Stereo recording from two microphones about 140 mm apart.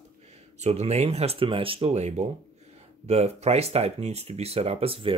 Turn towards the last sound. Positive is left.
turn(degrees=-45)  # may be behind; listen again after turning